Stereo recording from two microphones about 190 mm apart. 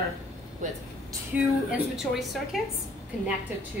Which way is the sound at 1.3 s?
5° right (ahead or behind).